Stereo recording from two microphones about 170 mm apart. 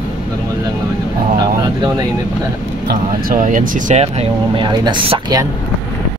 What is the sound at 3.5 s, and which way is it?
Speech, 50° right (ahead or behind).